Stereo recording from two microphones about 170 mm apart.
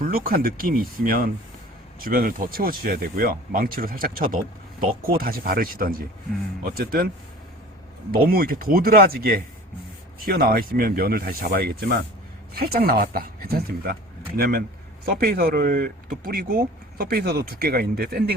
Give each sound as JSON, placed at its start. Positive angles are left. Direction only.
{"t": 0.0, "sound": "speech", "side_deg": -60}
{"t": 8.1, "sound": "speech", "side_deg": -60}